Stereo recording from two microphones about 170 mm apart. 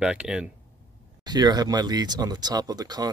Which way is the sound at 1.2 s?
25° right (ahead or behind).